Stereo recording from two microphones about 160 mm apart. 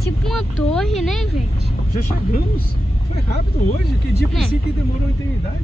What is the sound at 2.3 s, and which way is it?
Speech, 75° left (ahead or behind).